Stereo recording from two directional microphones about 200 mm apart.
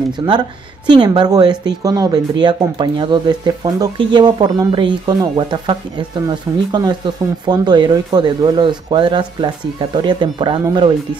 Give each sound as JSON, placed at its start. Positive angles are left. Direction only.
{"t": 0.3, "sound": "speech", "side_deg": -20}